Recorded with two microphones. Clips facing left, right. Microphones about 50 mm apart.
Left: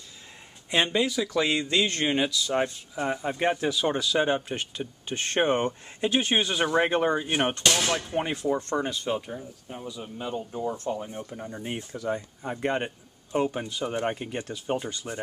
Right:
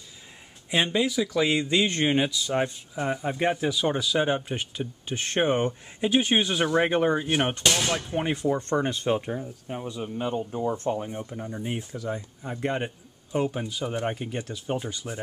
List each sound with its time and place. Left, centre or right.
0.8 s speech: centre
2.5 s speech: centre
8.7 s speech: centre
11.3 s speech: centre